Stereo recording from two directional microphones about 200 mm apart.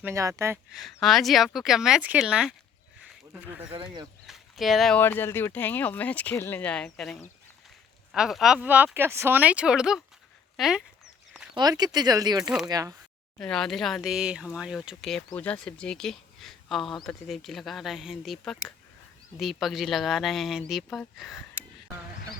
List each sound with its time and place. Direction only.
0.0 s speech: 15° right (ahead or behind)
0.7 s speech: centre (ahead or behind)
11.5 s speech: 20° right (ahead or behind)
13.4 s speech: centre (ahead or behind)